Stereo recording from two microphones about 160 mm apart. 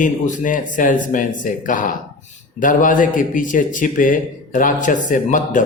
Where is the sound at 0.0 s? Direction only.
55° left (ahead or behind).